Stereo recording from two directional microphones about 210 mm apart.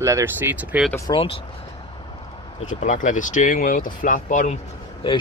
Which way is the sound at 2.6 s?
35° left (ahead or behind).